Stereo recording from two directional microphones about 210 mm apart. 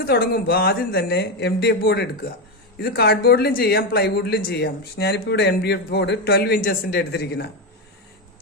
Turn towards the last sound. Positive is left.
turn(degrees=50)  # may be behind; listen again after turning